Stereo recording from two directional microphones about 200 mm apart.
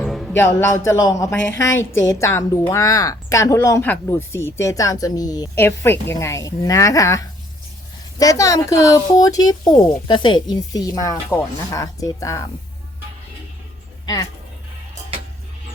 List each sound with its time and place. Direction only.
0.0 s music: centre (ahead or behind)
0.3 s a woman's voice: 10° left (ahead or behind)